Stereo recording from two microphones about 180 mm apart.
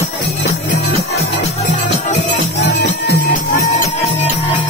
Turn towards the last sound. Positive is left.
turn(degrees=60)  # may be behind; listen again after turning